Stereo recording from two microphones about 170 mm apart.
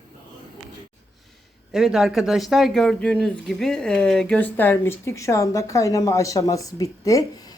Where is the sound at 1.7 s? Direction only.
Centre (ahead or behind).